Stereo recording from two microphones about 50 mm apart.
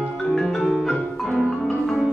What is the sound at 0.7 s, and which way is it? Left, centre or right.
Music, centre.